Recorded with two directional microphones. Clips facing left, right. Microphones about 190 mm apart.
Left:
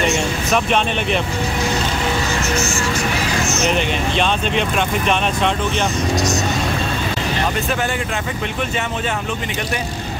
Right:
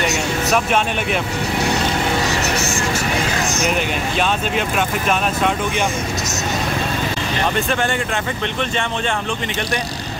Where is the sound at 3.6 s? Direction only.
5° right (ahead or behind).